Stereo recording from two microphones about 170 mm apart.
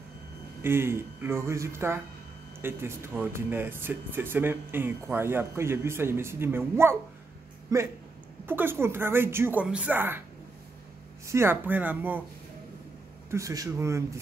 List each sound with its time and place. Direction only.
0.6 s speech: 15° right (ahead or behind)
11.2 s speech: 15° right (ahead or behind)
13.3 s speech: 20° right (ahead or behind)